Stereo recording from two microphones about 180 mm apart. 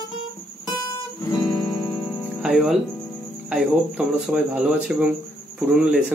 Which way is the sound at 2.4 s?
Centre (ahead or behind).